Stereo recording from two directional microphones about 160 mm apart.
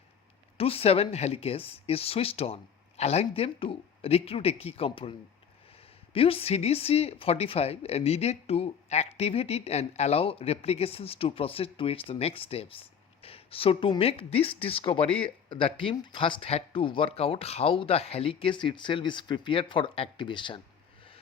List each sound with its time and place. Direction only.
0.5 s speech: 35° left (ahead or behind)
6.1 s speech: 35° left (ahead or behind)